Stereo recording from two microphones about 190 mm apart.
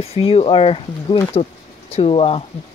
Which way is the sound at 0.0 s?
30° left (ahead or behind).